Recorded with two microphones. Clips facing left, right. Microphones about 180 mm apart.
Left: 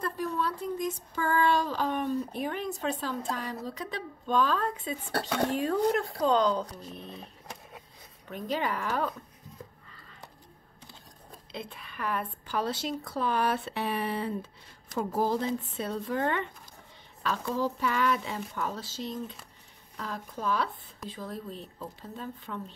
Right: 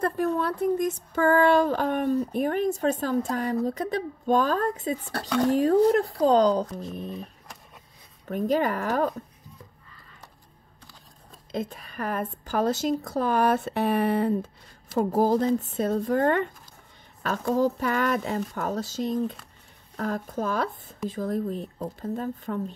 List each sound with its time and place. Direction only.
0.0 s speech: 55° right (ahead or behind); by 6.9 s 35° right (ahead or behind)
6.9 s speech: 50° right (ahead or behind)
8.3 s speech: 45° right (ahead or behind)
11.5 s speech: 45° right (ahead or behind)